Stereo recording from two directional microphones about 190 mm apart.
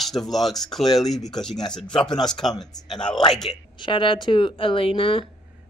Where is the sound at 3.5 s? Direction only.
25° left (ahead or behind).